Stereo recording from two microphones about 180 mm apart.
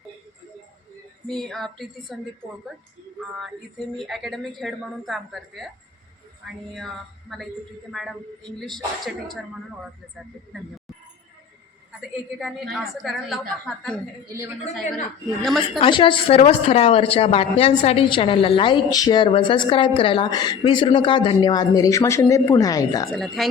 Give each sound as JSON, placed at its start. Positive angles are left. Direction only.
{"t": 1.3, "sound": "speech", "side_deg": 0}
{"t": 3.3, "sound": "speech", "side_deg": 0}
{"t": 6.7, "sound": "speech", "side_deg": 0}
{"t": 12.4, "sound": "speech", "side_deg": 0}
{"t": 15.4, "sound": "speech", "side_deg": 0}
{"t": 15.8, "sound": "speech", "side_deg": 25}
{"t": 23.1, "sound": "speech", "side_deg": 0}